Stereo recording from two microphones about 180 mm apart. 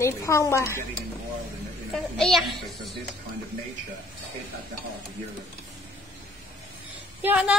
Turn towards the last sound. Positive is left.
turn(degrees=-5)  # may be behind; listen again after turning